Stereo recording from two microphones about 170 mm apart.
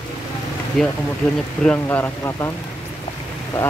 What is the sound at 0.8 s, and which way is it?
Speech, centre (ahead or behind).